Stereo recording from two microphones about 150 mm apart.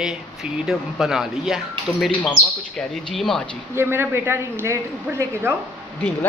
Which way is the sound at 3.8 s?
15° right (ahead or behind).